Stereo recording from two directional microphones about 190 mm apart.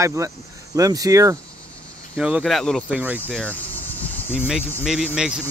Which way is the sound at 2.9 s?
10° right (ahead or behind).